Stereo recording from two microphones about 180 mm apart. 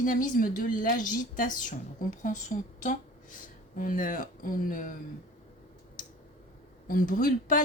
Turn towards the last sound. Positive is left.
turn(degrees=50)  # may be behind; listen again after turning